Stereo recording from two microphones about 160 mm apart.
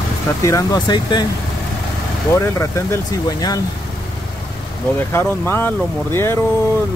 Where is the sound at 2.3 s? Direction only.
15° left (ahead or behind).